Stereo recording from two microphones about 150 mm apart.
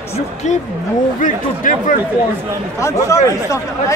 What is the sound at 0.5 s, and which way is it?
Speech, 55° left (ahead or behind).